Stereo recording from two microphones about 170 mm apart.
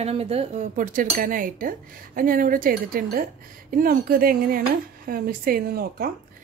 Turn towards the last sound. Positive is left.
turn(degrees=-60)  # may be behind; listen again after turning